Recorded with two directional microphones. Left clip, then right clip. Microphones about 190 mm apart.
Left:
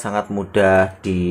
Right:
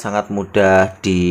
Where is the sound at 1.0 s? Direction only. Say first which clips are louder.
Right 5 dB; 25° right (ahead or behind).